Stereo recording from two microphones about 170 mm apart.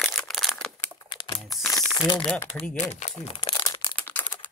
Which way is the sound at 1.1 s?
30° left (ahead or behind).